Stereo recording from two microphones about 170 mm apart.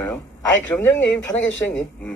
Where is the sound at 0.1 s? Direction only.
10° left (ahead or behind).